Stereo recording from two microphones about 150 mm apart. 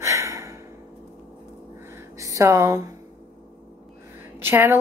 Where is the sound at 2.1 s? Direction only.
20° right (ahead or behind).